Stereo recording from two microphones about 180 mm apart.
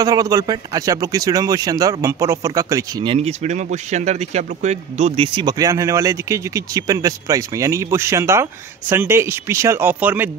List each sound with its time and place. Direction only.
0.0 s speech: 20° right (ahead or behind)
3.3 s speech: 40° right (ahead or behind); by 10.3 s 10° right (ahead or behind)